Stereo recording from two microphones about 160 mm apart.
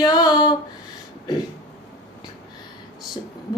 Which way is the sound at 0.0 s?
25° left (ahead or behind).